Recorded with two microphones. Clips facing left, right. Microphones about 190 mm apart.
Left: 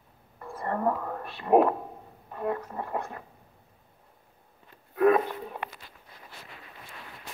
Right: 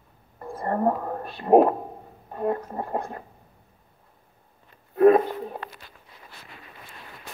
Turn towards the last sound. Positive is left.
turn(degrees=-35)  # may be behind; listen again after turning